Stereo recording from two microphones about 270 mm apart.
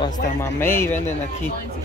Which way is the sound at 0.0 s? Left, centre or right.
Centre.